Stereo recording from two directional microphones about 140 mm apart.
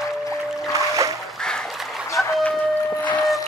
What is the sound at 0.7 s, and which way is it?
Music, 25° right (ahead or behind).